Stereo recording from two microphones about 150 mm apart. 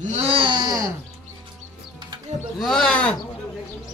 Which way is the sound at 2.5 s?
5° left (ahead or behind).